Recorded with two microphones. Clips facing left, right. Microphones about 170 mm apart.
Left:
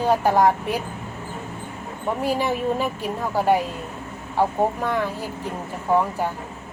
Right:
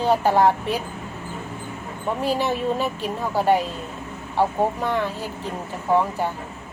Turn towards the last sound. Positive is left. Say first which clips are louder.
# even
turn(degrees=10)  # may be behind; listen again after turning